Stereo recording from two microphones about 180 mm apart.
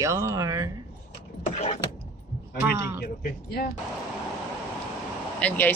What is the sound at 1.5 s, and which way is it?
Vehicle, 35° left (ahead or behind).